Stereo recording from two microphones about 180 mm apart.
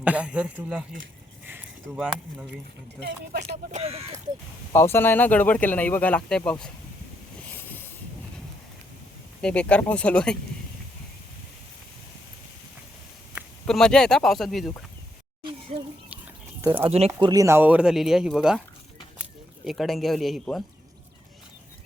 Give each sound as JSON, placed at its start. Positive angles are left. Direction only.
{"t": 0.0, "sound": "speech", "side_deg": -5}
{"t": 3.3, "sound": "speech", "side_deg": -50}
{"t": 3.8, "sound": "speech", "side_deg": -35}
{"t": 4.7, "sound": "speech", "side_deg": 15}
{"t": 7.4, "sound": "vehicle", "side_deg": 10}
{"t": 9.4, "sound": "speech", "side_deg": 5}
{"t": 13.3, "sound": "speech", "side_deg": 0}
{"t": 15.7, "sound": "speech", "side_deg": -35}
{"t": 16.6, "sound": "speech", "side_deg": -15}
{"t": 19.6, "sound": "speech", "side_deg": 0}